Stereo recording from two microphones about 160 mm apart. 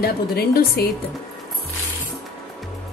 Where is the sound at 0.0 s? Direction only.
75° left (ahead or behind).